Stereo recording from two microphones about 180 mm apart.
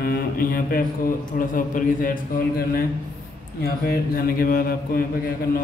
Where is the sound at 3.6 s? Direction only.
55° left (ahead or behind).